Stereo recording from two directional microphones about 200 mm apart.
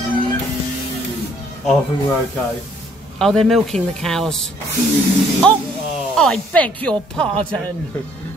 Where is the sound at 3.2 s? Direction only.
Centre (ahead or behind).